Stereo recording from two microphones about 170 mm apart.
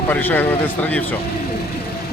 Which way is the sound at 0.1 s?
10° left (ahead or behind).